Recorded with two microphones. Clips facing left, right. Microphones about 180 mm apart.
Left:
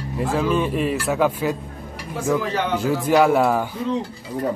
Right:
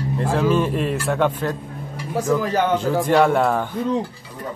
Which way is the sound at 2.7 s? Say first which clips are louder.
Left 2 dB; 10° left (ahead or behind).